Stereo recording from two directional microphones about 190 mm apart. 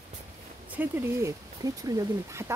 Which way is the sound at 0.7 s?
10° right (ahead or behind).